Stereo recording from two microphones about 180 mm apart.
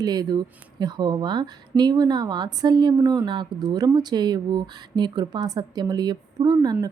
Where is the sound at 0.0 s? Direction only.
20° right (ahead or behind).